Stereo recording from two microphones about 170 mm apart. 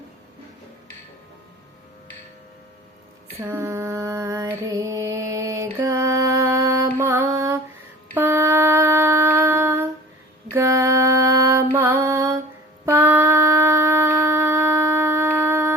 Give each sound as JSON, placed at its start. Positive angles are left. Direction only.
{"t": 3.4, "sound": "mantra", "side_deg": -15}
{"t": 8.1, "sound": "wind instrument", "side_deg": -15}
{"t": 10.5, "sound": "mantra", "side_deg": -15}
{"t": 12.8, "sound": "shofar", "side_deg": -15}